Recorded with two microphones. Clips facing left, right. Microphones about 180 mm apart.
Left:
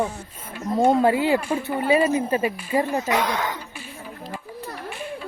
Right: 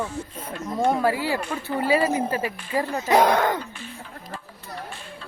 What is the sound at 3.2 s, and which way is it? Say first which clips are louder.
Speech: right 6 dB; 55° right (ahead or behind).